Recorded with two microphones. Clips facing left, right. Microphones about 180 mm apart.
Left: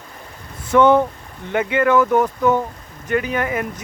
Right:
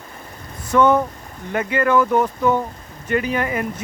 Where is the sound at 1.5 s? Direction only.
5° left (ahead or behind).